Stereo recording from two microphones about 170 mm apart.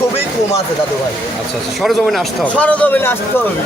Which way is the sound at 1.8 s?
Centre (ahead or behind).